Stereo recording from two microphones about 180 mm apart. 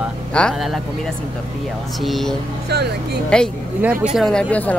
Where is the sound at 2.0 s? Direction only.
Centre (ahead or behind).